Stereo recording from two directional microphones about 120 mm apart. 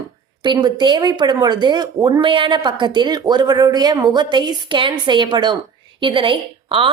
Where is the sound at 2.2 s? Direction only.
45° right (ahead or behind).